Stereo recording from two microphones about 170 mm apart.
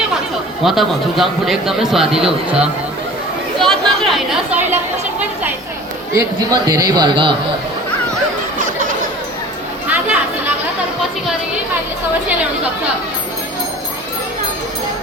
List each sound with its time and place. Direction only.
0.6 s a man's voice: centre (ahead or behind)
3.6 s chatter: centre (ahead or behind)
6.1 s speech: 20° right (ahead or behind)
9.9 s chatter: 10° right (ahead or behind)